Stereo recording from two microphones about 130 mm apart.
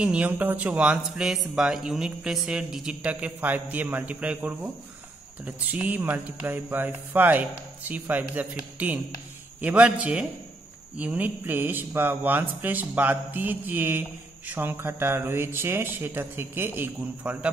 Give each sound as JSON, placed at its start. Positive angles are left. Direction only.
{"t": 0.0, "sound": "speech", "side_deg": -10}